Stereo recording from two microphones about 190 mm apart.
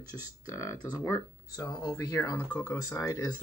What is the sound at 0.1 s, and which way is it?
Speech, 15° left (ahead or behind).